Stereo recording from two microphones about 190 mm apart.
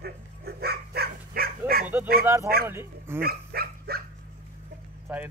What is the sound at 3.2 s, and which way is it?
Dog, 55° right (ahead or behind).